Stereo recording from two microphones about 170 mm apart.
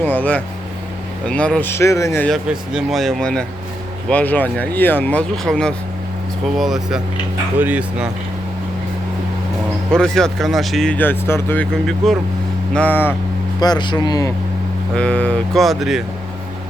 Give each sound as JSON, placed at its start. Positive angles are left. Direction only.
{"t": 0.0, "sound": "speech", "side_deg": 10}
{"t": 2.2, "sound": "speech", "side_deg": 0}
{"t": 9.9, "sound": "speech", "side_deg": 5}
{"t": 13.6, "sound": "speech", "side_deg": 25}
{"t": 14.9, "sound": "speech", "side_deg": 5}